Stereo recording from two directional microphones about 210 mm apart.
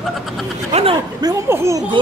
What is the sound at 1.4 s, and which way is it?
Speech, 15° right (ahead or behind).